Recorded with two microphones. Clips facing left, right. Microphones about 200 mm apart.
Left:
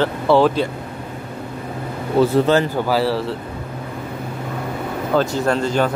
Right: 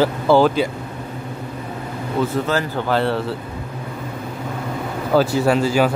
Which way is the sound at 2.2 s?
30° left (ahead or behind).